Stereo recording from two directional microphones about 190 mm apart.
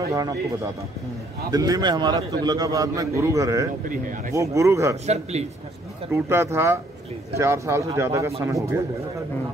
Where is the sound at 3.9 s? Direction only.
45° right (ahead or behind).